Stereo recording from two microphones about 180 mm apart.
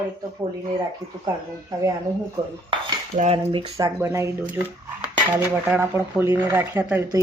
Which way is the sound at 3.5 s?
30° right (ahead or behind).